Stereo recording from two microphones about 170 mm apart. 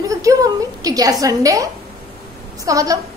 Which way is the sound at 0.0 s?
20° right (ahead or behind).